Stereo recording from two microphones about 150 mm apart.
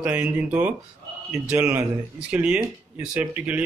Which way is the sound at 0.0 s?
10° right (ahead or behind).